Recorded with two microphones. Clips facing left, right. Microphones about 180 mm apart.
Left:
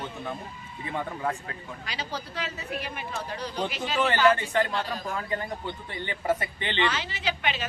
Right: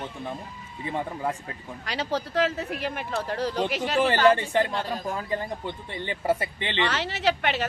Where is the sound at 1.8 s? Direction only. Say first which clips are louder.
Right 8 dB; 70° right (ahead or behind).